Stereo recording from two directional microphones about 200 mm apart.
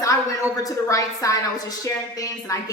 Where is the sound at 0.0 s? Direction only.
15° left (ahead or behind).